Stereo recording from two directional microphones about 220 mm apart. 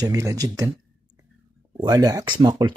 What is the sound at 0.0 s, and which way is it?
Speech, 15° right (ahead or behind).